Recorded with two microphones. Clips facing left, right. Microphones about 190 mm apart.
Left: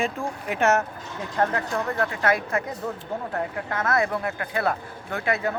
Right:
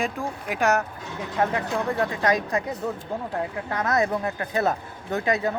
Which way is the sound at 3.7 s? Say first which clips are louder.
Right 1 dB; 15° right (ahead or behind).